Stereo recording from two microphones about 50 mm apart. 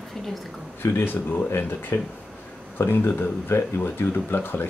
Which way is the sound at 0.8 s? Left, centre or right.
Left.